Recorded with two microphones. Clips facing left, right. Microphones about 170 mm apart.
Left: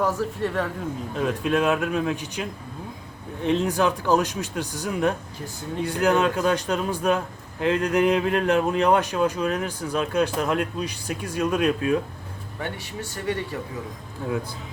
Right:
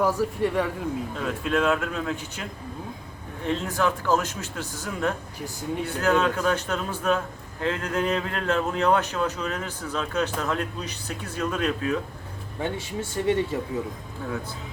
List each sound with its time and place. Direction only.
0.0 s speech: 10° right (ahead or behind)
1.2 s speech: 15° left (ahead or behind)
12.5 s speech: 20° right (ahead or behind)